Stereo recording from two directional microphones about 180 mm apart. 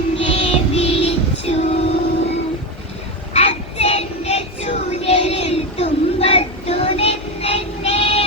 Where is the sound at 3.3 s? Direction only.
35° left (ahead or behind).